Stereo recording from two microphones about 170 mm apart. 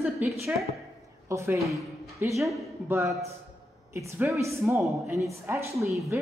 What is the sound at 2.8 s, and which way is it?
A man's voice, 15° right (ahead or behind).